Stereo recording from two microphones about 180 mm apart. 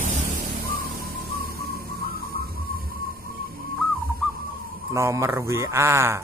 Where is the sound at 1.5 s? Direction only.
60° right (ahead or behind).